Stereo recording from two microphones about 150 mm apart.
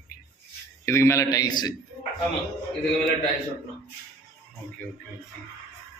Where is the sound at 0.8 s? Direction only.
20° left (ahead or behind).